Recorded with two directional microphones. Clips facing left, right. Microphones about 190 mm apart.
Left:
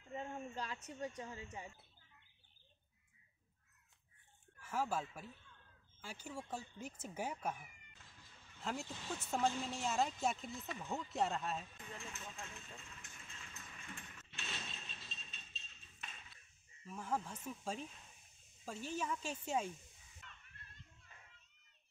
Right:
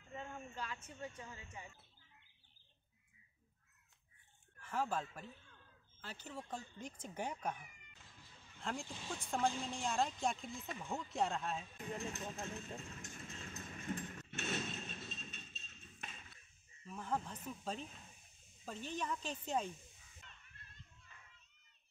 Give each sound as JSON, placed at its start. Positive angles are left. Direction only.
{"t": 0.1, "sound": "speech", "side_deg": 30}
{"t": 4.6, "sound": "speech", "side_deg": 10}
{"t": 8.8, "sound": "speech", "side_deg": -15}
{"t": 9.6, "sound": "speech", "side_deg": 5}
{"t": 12.0, "sound": "vehicle", "side_deg": -40}
{"t": 16.8, "sound": "speech", "side_deg": 10}